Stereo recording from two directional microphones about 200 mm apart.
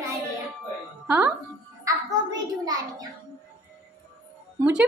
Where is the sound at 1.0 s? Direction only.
10° right (ahead or behind).